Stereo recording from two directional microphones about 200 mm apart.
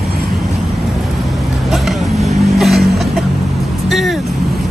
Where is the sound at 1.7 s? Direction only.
Centre (ahead or behind).